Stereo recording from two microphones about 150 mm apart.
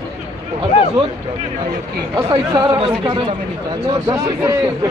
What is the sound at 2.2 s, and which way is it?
Speech, 30° right (ahead or behind).